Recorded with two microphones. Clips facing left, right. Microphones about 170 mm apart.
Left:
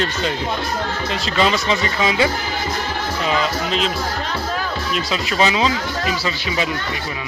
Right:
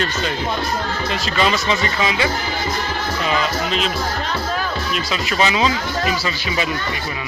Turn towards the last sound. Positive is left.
turn(degrees=30)  # may be behind; listen again after turning